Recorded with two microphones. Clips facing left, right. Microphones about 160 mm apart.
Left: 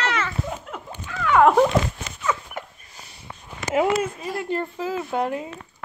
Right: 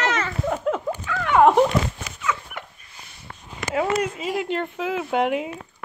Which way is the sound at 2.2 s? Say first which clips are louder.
Left 1 dB; 35° left (ahead or behind).